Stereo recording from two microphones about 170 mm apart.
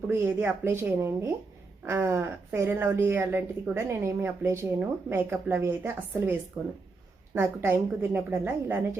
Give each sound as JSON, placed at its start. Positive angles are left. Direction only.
{"t": 0.1, "sound": "a woman's voice", "side_deg": -10}